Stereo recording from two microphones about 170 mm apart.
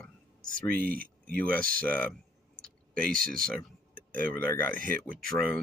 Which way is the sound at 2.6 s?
55° right (ahead or behind).